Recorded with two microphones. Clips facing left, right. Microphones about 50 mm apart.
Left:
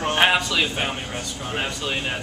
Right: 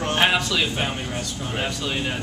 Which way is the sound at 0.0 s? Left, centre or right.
Centre.